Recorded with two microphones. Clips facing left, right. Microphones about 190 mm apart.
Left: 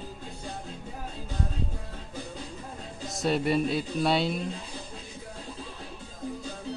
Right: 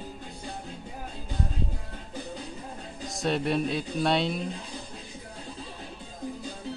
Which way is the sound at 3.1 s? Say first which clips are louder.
Left 1 dB; centre (ahead or behind).